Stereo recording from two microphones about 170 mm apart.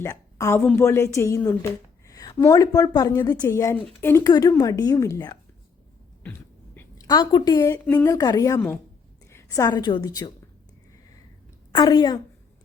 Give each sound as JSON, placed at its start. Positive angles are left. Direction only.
{"t": 0.0, "sound": "a woman's voice", "side_deg": 20}
{"t": 0.6, "sound": "a woman's voice", "side_deg": 5}
{"t": 0.9, "sound": "a woman's voice", "side_deg": 15}
{"t": 6.7, "sound": "a woman's voice", "side_deg": 20}
{"t": 11.7, "sound": "a woman's voice", "side_deg": 25}